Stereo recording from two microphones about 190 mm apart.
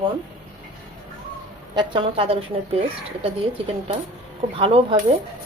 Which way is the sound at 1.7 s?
25° right (ahead or behind).